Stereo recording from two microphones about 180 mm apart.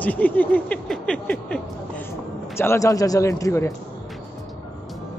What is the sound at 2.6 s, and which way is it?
A man's voice, 15° left (ahead or behind).